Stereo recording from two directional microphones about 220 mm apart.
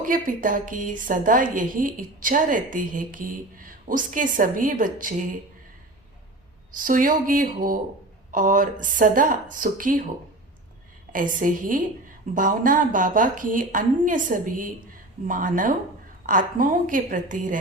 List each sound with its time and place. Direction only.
0.0 s a woman's voice: 40° right (ahead or behind)
6.7 s a woman's voice: 35° right (ahead or behind)
11.1 s a woman's voice: 35° right (ahead or behind)